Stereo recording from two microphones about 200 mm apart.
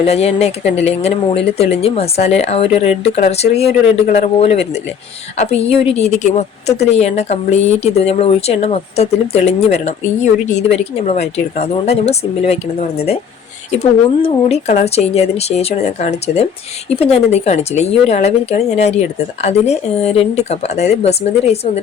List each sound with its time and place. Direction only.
0.0 s speech: 30° left (ahead or behind)
14.3 s speech: 30° left (ahead or behind)